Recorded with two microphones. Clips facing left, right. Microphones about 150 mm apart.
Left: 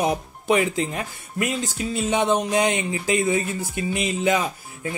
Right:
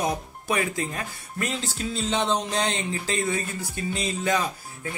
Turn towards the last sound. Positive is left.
turn(degrees=15)  # may be behind; listen again after turning